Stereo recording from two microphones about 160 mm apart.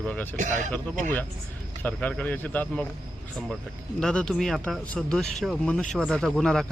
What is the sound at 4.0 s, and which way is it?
Speech, 5° left (ahead or behind).